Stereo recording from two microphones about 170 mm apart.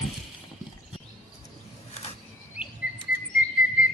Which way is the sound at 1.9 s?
35° left (ahead or behind).